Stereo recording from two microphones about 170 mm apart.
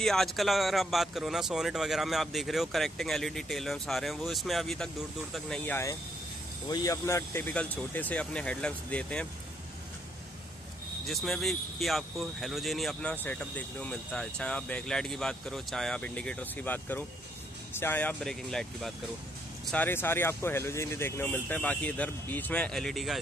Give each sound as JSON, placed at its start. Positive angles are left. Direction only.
{"t": 0.0, "sound": "speech", "side_deg": 0}
{"t": 6.7, "sound": "speech", "side_deg": 20}
{"t": 11.1, "sound": "speech", "side_deg": 0}